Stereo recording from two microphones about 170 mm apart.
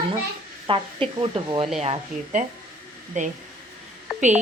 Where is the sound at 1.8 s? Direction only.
40° right (ahead or behind).